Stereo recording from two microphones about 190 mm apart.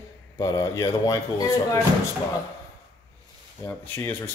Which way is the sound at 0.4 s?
20° left (ahead or behind).